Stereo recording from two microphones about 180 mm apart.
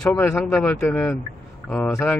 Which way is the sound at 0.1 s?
15° left (ahead or behind).